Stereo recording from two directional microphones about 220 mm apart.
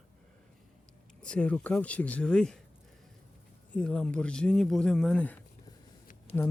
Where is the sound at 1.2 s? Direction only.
5° left (ahead or behind).